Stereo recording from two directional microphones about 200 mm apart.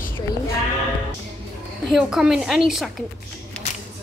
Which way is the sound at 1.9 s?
Centre (ahead or behind).